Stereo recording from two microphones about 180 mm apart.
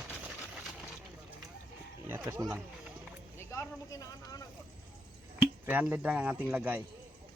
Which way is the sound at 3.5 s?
15° left (ahead or behind).